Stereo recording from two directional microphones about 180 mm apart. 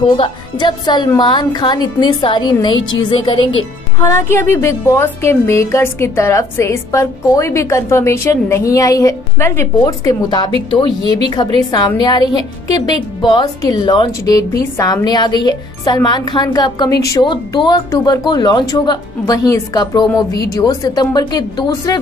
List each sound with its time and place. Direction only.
0.0 s a woman's voice: 25° left (ahead or behind)
4.0 s a woman's voice: 15° left (ahead or behind)